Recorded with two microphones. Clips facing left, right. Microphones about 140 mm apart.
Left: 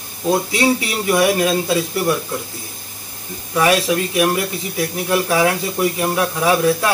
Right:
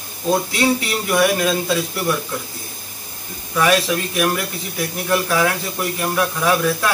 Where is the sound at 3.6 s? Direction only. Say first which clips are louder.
Left 1 dB; 20° left (ahead or behind).